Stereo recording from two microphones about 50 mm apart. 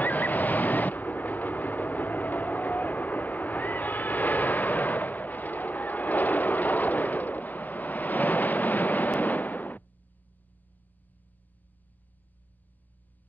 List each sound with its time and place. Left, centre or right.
0.0 s train: left